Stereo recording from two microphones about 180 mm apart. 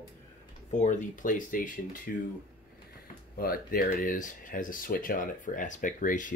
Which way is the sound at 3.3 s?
55° left (ahead or behind).